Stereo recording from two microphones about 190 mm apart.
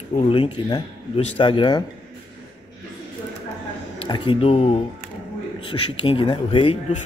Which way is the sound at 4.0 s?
30° left (ahead or behind).